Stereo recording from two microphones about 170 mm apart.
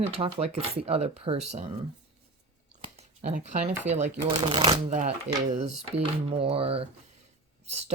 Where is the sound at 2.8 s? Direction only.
35° right (ahead or behind).